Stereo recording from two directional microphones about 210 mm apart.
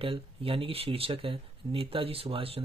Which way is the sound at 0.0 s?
25° right (ahead or behind).